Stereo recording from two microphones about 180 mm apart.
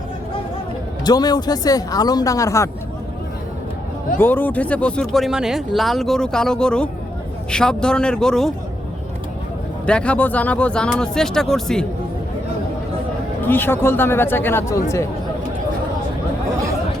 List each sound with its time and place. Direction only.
1.0 s speech: 20° left (ahead or behind)
4.2 s speech: 10° left (ahead or behind)
9.8 s speech: 5° left (ahead or behind)
13.4 s speech: 10° left (ahead or behind)